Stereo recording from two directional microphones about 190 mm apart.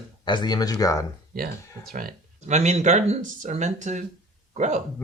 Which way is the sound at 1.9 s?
40° right (ahead or behind).